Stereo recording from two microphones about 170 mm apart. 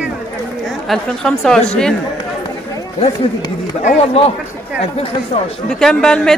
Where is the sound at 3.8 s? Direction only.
40° left (ahead or behind).